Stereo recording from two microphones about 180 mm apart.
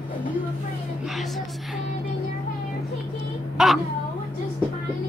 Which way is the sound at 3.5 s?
Centre (ahead or behind).